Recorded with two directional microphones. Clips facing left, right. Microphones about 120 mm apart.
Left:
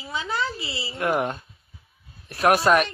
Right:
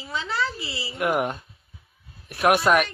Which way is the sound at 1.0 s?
15° right (ahead or behind).